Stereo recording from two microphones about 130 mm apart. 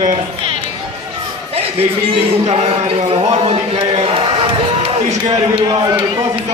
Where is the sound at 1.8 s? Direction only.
45° right (ahead or behind).